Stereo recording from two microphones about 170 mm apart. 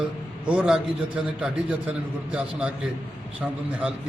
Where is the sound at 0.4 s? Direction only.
5° right (ahead or behind).